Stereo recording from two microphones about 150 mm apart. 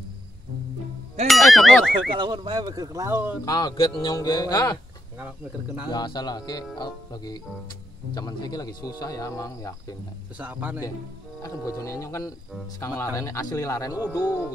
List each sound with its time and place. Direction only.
1.2 s speech: centre (ahead or behind)
2.1 s speech: 30° right (ahead or behind)
3.4 s speech: 30° left (ahead or behind)
5.2 s speech: 10° right (ahead or behind)
5.9 s speech: 30° left (ahead or behind)
10.3 s speech: 10° right (ahead or behind)
11.4 s speech: 20° left (ahead or behind)